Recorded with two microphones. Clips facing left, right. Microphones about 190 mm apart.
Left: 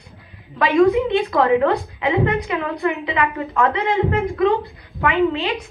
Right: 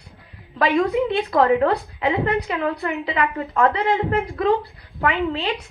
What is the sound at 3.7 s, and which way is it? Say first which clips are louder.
Speech: left 1 dB; 35° right (ahead or behind).